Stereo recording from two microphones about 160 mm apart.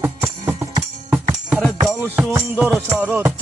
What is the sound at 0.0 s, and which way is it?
Music, 15° right (ahead or behind).